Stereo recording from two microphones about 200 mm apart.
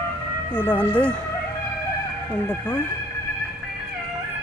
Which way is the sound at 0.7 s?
5° left (ahead or behind).